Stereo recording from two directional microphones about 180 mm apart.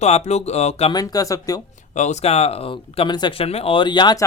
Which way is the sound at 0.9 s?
20° left (ahead or behind).